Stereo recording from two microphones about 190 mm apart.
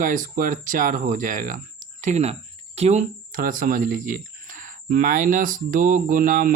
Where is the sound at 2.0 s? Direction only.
35° right (ahead or behind).